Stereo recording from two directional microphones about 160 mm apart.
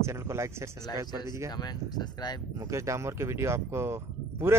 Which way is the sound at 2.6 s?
20° right (ahead or behind).